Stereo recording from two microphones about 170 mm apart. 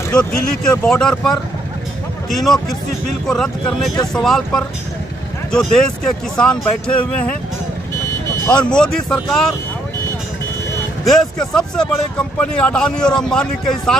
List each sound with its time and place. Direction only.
0.7 s speech: 5° left (ahead or behind)
2.3 s speech: centre (ahead or behind)
8.5 s speech: 5° left (ahead or behind)
11.1 s speech: 5° left (ahead or behind)